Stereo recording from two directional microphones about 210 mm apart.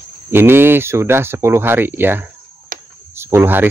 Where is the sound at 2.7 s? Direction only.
40° right (ahead or behind).